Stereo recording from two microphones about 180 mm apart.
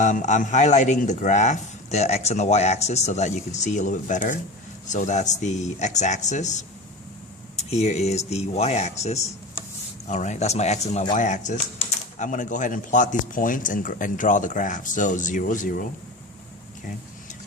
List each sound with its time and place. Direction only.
0.0 s speech: 45° left (ahead or behind)